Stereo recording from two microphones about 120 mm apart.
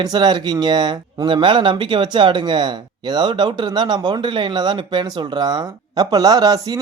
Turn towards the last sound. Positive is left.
turn(degrees=-30)  # may be behind; listen again after turning